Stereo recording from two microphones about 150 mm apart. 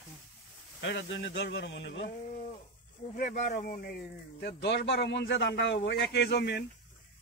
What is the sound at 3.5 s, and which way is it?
Speech, 75° left (ahead or behind).